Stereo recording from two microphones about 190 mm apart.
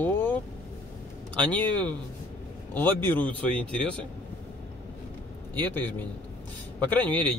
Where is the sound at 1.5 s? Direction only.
25° right (ahead or behind).